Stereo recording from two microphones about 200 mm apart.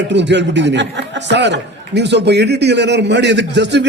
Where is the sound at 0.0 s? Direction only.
60° right (ahead or behind).